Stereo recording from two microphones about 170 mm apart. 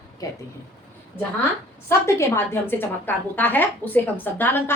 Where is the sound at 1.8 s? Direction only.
15° left (ahead or behind).